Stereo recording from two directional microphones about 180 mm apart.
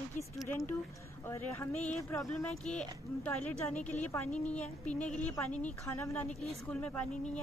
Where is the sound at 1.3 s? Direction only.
15° left (ahead or behind).